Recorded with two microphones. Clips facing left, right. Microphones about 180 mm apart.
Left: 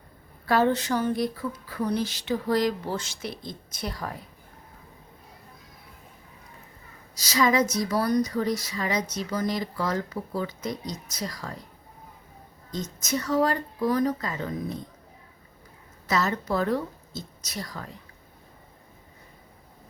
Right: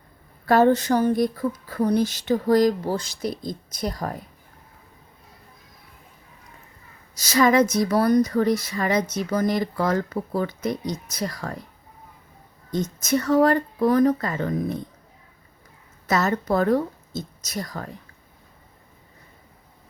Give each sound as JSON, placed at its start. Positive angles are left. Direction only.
{"t": 0.4, "sound": "speech", "side_deg": -45}
{"t": 7.2, "sound": "speech", "side_deg": -50}
{"t": 12.7, "sound": "speech", "side_deg": -55}
{"t": 16.0, "sound": "a woman's voice", "side_deg": -50}